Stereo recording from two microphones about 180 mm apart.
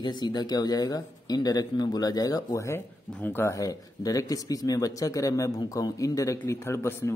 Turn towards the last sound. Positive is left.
turn(degrees=15)  # may be behind; listen again after turning